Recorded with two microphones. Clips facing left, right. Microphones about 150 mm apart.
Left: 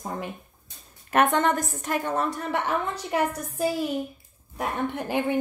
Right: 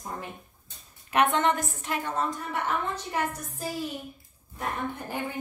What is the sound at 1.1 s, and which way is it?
A woman's voice, 45° left (ahead or behind).